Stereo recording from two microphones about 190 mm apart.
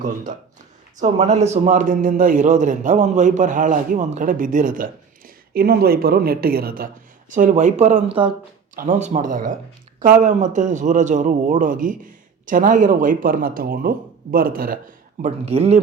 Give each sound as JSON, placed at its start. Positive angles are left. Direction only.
{"t": 0.9, "sound": "a man's voice", "side_deg": -35}